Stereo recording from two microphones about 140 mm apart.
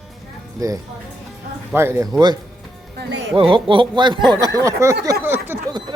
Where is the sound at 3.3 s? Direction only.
40° right (ahead or behind); by 5.1 s 20° right (ahead or behind).